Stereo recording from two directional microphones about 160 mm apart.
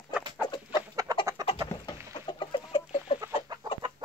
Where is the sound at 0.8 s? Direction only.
20° right (ahead or behind).